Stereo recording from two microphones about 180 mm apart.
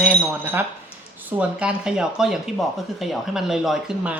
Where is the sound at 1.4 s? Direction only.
5° right (ahead or behind).